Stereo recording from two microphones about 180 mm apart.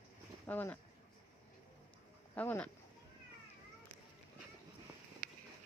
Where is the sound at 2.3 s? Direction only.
10° left (ahead or behind).